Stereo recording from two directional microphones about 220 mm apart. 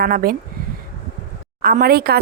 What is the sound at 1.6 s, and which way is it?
Speech, 40° right (ahead or behind).